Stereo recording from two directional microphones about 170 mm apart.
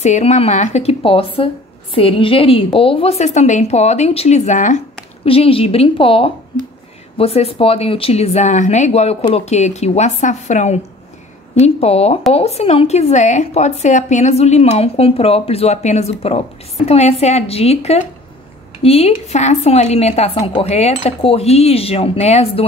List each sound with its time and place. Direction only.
0.0 s a woman's voice: 40° left (ahead or behind)
5.2 s a woman's voice: 35° left (ahead or behind)